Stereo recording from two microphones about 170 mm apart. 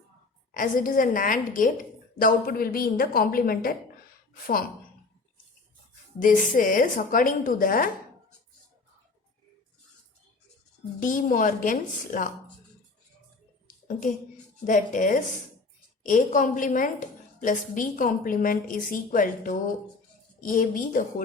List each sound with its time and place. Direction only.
0.5 s a woman's voice: 55° left (ahead or behind)
6.1 s a woman's voice: 50° left (ahead or behind)
11.0 s a woman's voice: 50° left (ahead or behind)
14.7 s a woman's voice: 50° left (ahead or behind)